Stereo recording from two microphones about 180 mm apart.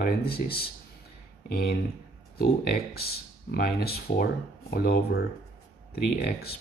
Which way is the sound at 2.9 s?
60° left (ahead or behind).